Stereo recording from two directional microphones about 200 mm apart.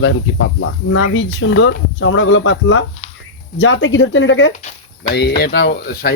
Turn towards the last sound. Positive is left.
turn(degrees=50)  # may be behind; listen again after turning